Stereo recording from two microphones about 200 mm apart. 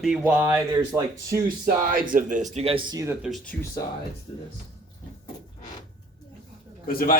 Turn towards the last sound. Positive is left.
turn(degrees=45)  # may be behind; listen again after turning